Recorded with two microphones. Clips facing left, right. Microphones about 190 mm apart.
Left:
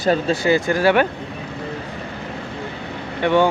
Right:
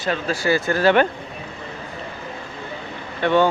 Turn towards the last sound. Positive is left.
turn(degrees=15)  # may be behind; listen again after turning